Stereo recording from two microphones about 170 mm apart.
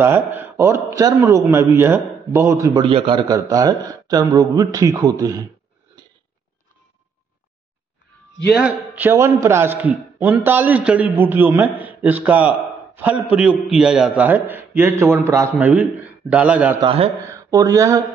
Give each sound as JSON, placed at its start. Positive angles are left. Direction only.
{"t": 0.0, "sound": "a man's voice", "side_deg": -10}
{"t": 2.8, "sound": "a man's voice", "side_deg": -30}
{"t": 3.3, "sound": "speech", "side_deg": -20}
{"t": 8.6, "sound": "a man's voice", "side_deg": -10}
{"t": 16.8, "sound": "a man's voice", "side_deg": -35}
{"t": 17.3, "sound": "speech", "side_deg": -20}